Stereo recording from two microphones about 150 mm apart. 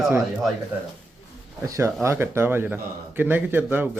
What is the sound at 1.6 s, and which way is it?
Speech, 20° right (ahead or behind).